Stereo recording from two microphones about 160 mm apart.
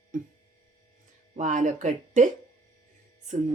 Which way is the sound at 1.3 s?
50° right (ahead or behind).